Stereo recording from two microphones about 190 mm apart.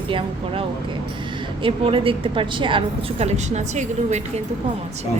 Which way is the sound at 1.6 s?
30° right (ahead or behind).